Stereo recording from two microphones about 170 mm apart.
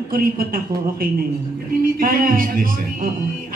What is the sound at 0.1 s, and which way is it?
A man's voice, 60° right (ahead or behind).